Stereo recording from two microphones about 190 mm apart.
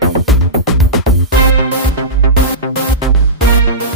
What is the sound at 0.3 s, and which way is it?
Music, centre (ahead or behind).